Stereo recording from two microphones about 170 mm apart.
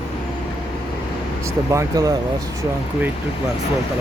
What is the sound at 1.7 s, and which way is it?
Speech, 20° right (ahead or behind).